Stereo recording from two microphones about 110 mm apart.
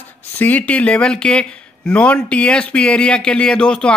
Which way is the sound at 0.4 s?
15° left (ahead or behind).